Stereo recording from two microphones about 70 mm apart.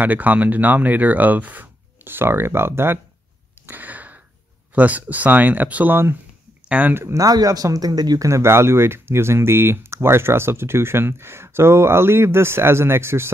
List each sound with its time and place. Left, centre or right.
0.0 s speech: right
3.6 s a sound: right
4.7 s speech: right
7.2 s speech: right
8.3 s speech: right